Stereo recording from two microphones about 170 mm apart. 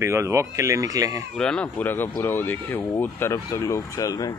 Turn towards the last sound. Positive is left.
turn(degrees=20)  # may be behind; listen again after turning